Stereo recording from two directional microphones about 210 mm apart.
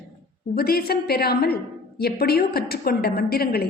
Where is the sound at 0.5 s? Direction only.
45° left (ahead or behind).